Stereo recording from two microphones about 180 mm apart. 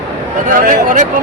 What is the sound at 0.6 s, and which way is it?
Speech, 50° right (ahead or behind).